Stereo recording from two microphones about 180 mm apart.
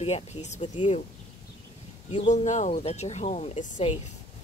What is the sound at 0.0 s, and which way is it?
Speech, 40° left (ahead or behind).